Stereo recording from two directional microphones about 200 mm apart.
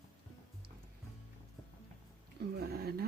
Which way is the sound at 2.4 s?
50° right (ahead or behind).